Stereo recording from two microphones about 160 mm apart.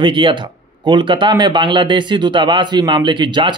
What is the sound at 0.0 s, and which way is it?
A man's voice, 30° right (ahead or behind).